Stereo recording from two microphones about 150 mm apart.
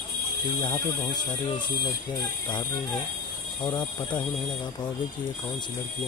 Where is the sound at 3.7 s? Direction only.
30° left (ahead or behind).